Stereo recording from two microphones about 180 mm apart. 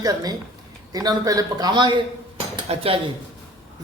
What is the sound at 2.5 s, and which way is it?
Dishes, 30° right (ahead or behind).